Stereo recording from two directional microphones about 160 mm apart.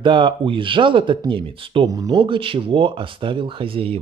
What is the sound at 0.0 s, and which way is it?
Speech, 30° right (ahead or behind).